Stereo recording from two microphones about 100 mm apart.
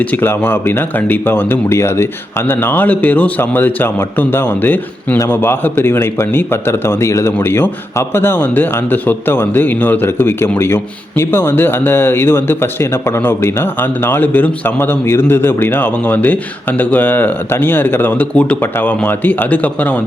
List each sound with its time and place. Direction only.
0.0 s a man's voice: 20° left (ahead or behind)